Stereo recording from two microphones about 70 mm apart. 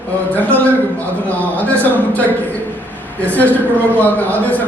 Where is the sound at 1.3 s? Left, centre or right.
Left.